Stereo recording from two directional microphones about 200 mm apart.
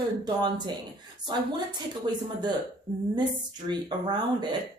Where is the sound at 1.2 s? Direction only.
20° right (ahead or behind).